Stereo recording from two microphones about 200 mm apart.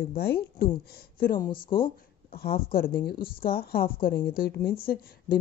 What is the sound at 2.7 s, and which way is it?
Speech, 45° left (ahead or behind).